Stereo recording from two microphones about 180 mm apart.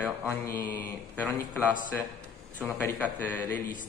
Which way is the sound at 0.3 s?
10° left (ahead or behind).